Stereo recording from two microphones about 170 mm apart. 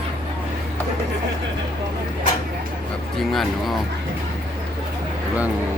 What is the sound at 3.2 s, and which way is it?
Speech, centre (ahead or behind).